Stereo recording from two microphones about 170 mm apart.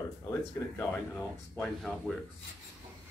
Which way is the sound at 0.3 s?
10° left (ahead or behind).